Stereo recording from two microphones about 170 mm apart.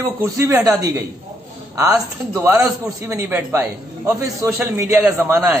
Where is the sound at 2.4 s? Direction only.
15° right (ahead or behind).